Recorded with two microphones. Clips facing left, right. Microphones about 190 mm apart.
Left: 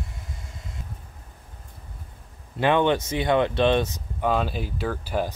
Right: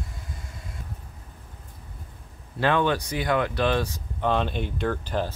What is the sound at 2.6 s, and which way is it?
Speech, 20° left (ahead or behind).